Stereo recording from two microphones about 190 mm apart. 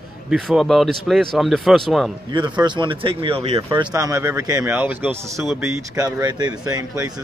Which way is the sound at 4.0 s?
15° right (ahead or behind).